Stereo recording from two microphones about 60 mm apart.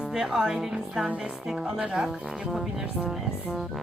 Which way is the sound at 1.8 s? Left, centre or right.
Right.